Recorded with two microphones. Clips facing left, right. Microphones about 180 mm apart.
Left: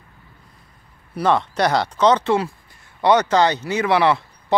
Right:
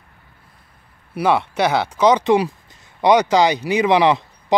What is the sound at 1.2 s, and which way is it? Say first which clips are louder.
Speech: right 1 dB; 10° right (ahead or behind).